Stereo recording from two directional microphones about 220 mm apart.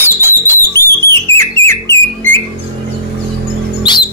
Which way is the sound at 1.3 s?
25° right (ahead or behind).